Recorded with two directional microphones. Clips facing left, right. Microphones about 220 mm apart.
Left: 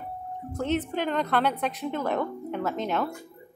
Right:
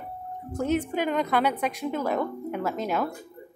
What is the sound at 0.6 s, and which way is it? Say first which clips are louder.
A woman's voice: right 2 dB; 10° right (ahead or behind).